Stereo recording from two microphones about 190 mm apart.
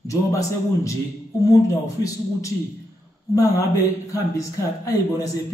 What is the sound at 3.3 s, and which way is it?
A man's voice, 15° left (ahead or behind).